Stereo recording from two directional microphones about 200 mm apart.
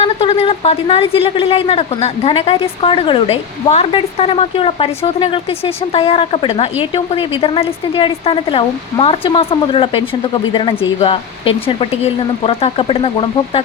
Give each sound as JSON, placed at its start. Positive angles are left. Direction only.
{"t": 0.0, "sound": "speech", "side_deg": 30}